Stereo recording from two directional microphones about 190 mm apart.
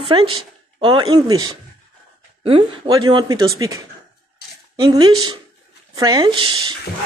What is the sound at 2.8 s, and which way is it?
Speech, 20° right (ahead or behind).